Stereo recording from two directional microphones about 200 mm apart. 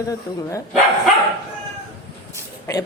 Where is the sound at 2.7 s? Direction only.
15° left (ahead or behind).